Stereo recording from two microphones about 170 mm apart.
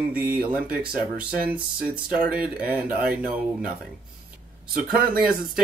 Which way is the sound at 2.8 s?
55° right (ahead or behind).